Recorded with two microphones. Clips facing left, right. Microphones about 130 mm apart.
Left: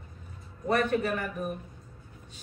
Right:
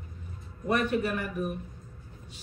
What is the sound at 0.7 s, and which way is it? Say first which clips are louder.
Speech: left 1 dB; 45° left (ahead or behind).